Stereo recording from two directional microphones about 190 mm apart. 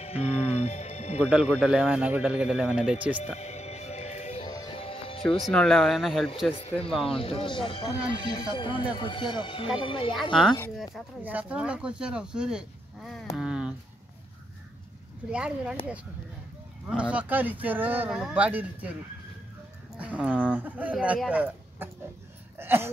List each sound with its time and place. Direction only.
0.0 s music: 35° left (ahead or behind)
1.2 s speech: 5° right (ahead or behind)
3.3 s music: 35° left (ahead or behind)
4.5 s music: 20° left (ahead or behind)
5.5 s speech: 5° left (ahead or behind)
6.5 s speech: 30° left (ahead or behind)
10.8 s speech: 5° right (ahead or behind)
13.4 s a sound: 5° right (ahead or behind)
15.2 s speech: 5° right (ahead or behind)
16.8 s speech: 5° right (ahead or behind)
20.0 s speech: 5° right (ahead or behind)
22.6 s a sound: 10° right (ahead or behind)